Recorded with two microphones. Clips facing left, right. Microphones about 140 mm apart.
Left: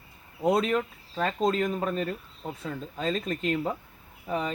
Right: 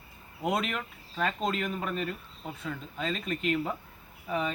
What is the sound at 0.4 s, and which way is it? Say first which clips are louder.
Speech: left 6 dB; 35° left (ahead or behind).